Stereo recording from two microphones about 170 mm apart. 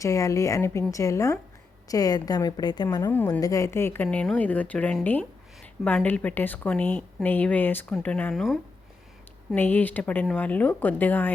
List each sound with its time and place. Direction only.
0.0 s a woman's voice: 20° left (ahead or behind)
9.6 s a woman's voice: 10° left (ahead or behind)